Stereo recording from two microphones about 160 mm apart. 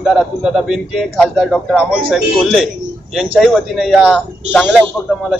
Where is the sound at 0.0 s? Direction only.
5° right (ahead or behind).